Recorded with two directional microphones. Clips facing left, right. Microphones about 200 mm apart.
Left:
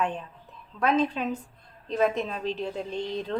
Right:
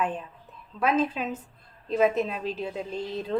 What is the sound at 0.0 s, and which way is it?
A woman's voice, 5° right (ahead or behind).